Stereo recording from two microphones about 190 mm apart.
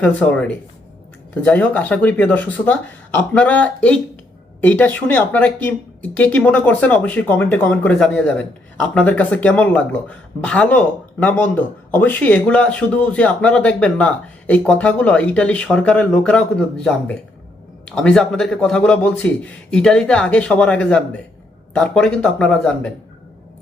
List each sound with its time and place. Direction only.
0.0 s a man's voice: 10° left (ahead or behind)